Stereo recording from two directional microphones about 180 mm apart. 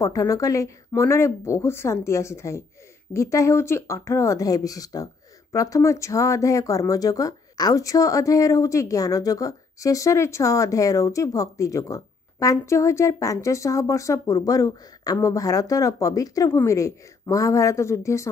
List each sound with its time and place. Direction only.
0.0 s speech: 20° left (ahead or behind)